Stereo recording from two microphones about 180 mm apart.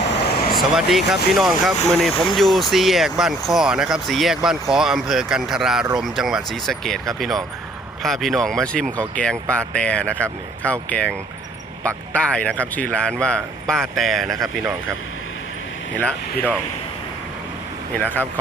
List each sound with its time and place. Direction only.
0.1 s vehicle: 55° left (ahead or behind)
0.7 s speech: centre (ahead or behind)
17.9 s speech: 10° left (ahead or behind)